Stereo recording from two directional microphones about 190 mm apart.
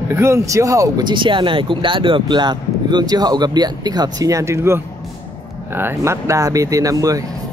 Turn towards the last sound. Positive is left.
turn(degrees=-20)  # may be behind; listen again after turning